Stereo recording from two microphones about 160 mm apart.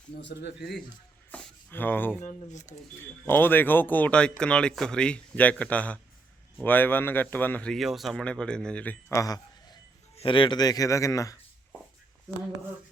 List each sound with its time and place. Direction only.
0.3 s speech: 90° left
1.3 s a sound: 10° left (ahead or behind)
2.2 s speech: 50° left (ahead or behind)
3.0 s speech: 15° left (ahead or behind)